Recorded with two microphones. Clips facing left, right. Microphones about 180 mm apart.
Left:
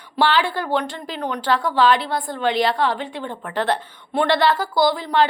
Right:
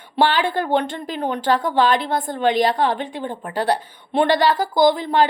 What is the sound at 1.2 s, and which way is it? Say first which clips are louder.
Speech: right 2 dB; 25° right (ahead or behind).